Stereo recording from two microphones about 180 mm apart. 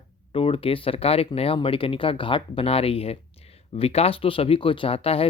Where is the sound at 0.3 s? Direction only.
30° left (ahead or behind).